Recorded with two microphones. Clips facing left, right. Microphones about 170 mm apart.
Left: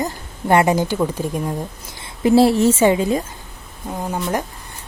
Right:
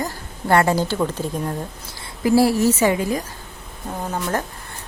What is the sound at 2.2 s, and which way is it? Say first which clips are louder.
Speech: left 3 dB; 25° left (ahead or behind).